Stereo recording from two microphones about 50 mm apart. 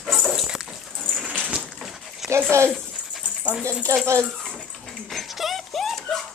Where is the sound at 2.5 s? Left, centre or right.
Right.